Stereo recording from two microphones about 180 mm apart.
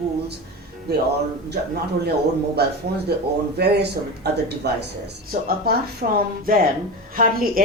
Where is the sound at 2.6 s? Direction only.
65° right (ahead or behind).